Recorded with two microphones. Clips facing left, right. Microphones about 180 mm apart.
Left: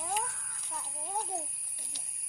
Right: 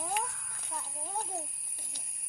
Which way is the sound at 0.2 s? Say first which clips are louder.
Right 1 dB; 65° right (ahead or behind).